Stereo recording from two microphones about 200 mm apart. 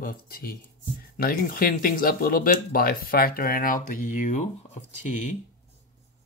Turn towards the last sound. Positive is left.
turn(degrees=40)  # may be behind; listen again after turning